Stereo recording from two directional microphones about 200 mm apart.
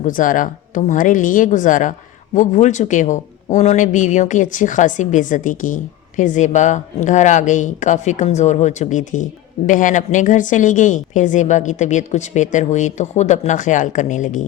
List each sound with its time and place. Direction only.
0.0 s speech: 40° left (ahead or behind)